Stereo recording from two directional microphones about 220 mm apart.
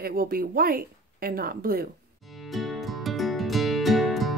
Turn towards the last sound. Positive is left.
turn(degrees=0)  # may be behind; listen again after turning